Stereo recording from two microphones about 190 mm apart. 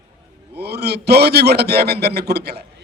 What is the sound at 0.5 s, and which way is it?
A man's voice, 60° right (ahead or behind).